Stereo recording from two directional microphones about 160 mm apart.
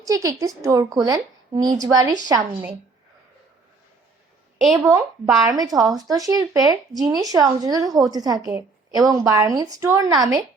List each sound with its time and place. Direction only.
0.0 s speech: 20° right (ahead or behind)
4.8 s speech: 10° right (ahead or behind)
5.5 s speech: 25° right (ahead or behind)